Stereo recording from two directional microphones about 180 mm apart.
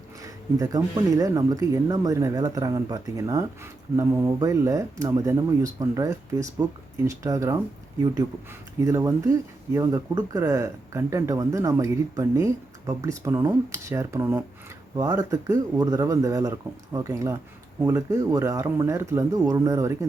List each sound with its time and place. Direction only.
0.2 s speech: 20° right (ahead or behind)
8.8 s speech: 15° right (ahead or behind)